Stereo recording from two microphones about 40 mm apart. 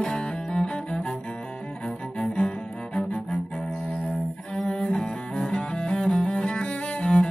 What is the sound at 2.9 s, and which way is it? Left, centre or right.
Cello, centre.